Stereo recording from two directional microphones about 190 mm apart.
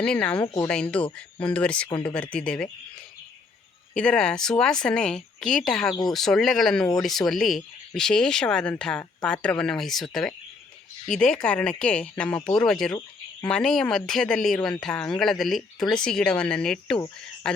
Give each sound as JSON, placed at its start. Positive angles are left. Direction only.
{"t": 0.0, "sound": "speech", "side_deg": 5}
{"t": 3.9, "sound": "speech", "side_deg": 5}
{"t": 11.4, "sound": "speech", "side_deg": 5}